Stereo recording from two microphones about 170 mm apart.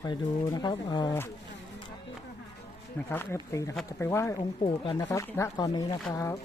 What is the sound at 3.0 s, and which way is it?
Speech, 15° left (ahead or behind).